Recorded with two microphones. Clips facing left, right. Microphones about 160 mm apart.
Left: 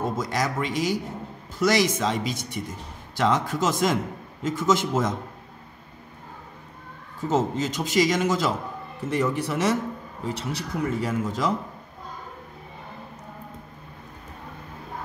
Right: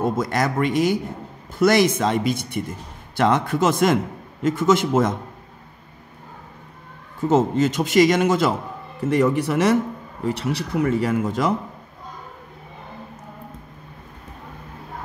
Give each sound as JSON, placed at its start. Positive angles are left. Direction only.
{"t": 0.2, "sound": "a man's voice", "side_deg": -60}
{"t": 7.2, "sound": "a man's voice", "side_deg": -65}